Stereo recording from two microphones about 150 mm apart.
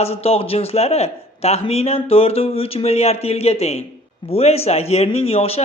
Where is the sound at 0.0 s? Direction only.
45° left (ahead or behind).